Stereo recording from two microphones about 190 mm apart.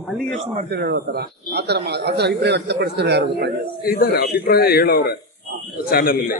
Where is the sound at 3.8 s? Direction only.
50° left (ahead or behind).